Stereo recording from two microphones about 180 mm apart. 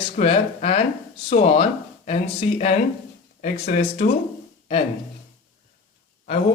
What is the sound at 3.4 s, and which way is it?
Speech, 45° left (ahead or behind).